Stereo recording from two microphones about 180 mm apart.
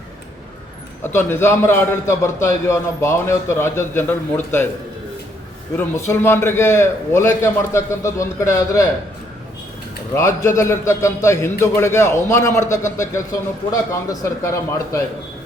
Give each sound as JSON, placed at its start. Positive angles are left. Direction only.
{"t": 1.0, "sound": "a man's voice", "side_deg": 15}
{"t": 5.7, "sound": "a man's voice", "side_deg": 10}
{"t": 10.2, "sound": "a man's voice", "side_deg": 15}